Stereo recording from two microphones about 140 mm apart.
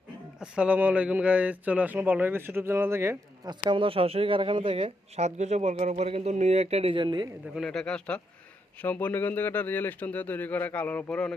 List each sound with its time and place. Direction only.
0.3 s speech: 5° right (ahead or behind)
3.5 s speech: 35° right (ahead or behind)
7.5 s speech: centre (ahead or behind)